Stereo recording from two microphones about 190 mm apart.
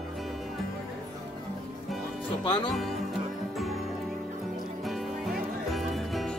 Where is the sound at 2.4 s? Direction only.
25° left (ahead or behind).